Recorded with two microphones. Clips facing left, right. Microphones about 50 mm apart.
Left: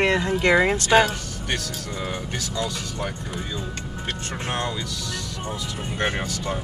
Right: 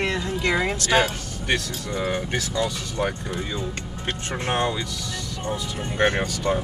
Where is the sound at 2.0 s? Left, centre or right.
Right.